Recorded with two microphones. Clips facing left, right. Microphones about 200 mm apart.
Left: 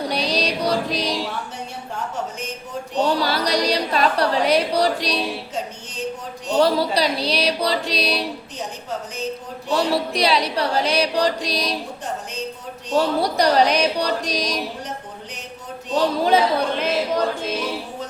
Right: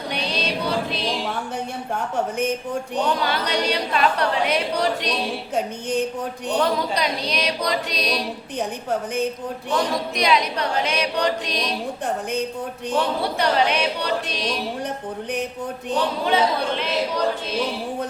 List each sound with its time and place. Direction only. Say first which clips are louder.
0.1 s music: left 3 dB; 35° left (ahead or behind)
3.1 s a woman's voice: left 2 dB; 35° left (ahead or behind)
6.6 s a woman's voice: left 5 dB; 35° left (ahead or behind)
9.7 s a woman's voice: left 3 dB; 35° left (ahead or behind)
13.0 s a woman's voice: left 4 dB; 40° left (ahead or behind)
16.0 s a woman's voice: left 4 dB; 40° left (ahead or behind)